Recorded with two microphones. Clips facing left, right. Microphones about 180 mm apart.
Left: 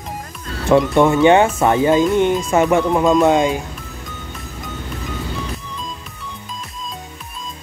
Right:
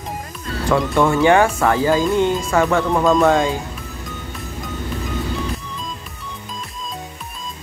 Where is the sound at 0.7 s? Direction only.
20° left (ahead or behind).